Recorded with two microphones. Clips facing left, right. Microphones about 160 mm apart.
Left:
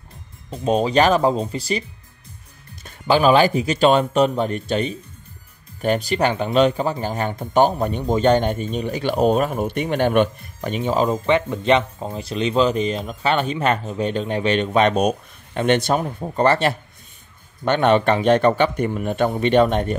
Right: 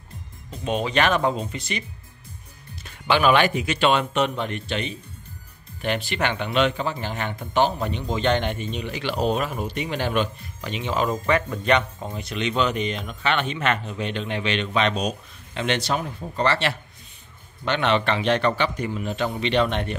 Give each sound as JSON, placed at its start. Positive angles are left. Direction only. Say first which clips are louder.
{"t": 0.5, "sound": "a man's voice", "louder": "left 6 dB", "side_deg": 35}
{"t": 11.1, "sound": "a man's voice", "louder": "left 4 dB", "side_deg": 25}